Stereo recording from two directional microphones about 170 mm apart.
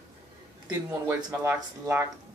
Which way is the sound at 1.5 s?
15° right (ahead or behind).